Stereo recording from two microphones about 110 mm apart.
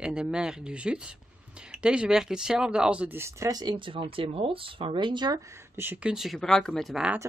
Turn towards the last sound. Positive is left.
turn(degrees=-5)  # may be behind; listen again after turning